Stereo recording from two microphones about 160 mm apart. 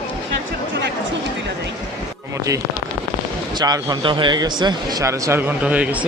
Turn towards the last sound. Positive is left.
turn(degrees=-10)  # may be behind; listen again after turning